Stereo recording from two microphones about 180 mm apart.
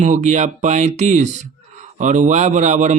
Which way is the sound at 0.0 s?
40° right (ahead or behind).